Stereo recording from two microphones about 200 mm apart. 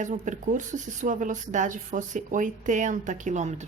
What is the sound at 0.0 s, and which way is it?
A woman's voice, 40° right (ahead or behind).